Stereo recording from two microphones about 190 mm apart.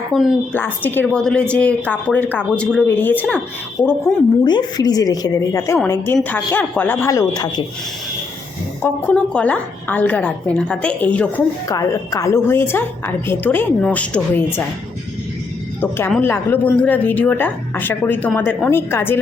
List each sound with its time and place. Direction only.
0.1 s a woman's voice: centre (ahead or behind)
0.5 s a woman's voice: 10° left (ahead or behind)
8.8 s a woman's voice: 5° left (ahead or behind)
15.8 s a woman's voice: 10° left (ahead or behind)